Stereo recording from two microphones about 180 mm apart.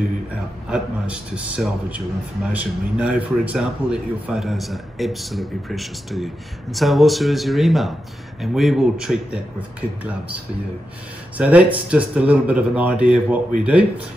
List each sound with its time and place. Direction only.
0.7 s a man's voice: 5° right (ahead or behind)
11.3 s speech: 5° right (ahead or behind)